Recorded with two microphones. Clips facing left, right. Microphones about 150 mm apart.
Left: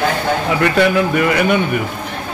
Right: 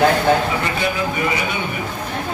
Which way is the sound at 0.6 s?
65° left (ahead or behind).